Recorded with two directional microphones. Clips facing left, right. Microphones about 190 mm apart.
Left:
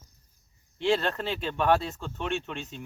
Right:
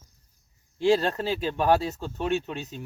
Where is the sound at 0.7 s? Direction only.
40° right (ahead or behind).